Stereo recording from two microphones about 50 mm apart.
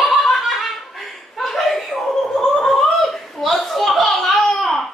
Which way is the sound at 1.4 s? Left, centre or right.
Centre.